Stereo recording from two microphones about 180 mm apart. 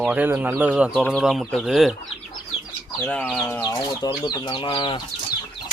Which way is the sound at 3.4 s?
20° left (ahead or behind).